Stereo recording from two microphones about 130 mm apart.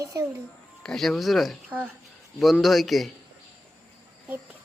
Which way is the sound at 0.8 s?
Centre (ahead or behind).